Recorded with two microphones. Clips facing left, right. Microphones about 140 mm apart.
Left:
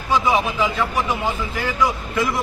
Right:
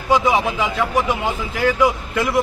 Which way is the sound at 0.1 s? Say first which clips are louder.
Right 2 dB; 15° right (ahead or behind).